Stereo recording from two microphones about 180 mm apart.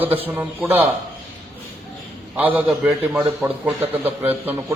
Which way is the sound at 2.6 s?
5° right (ahead or behind).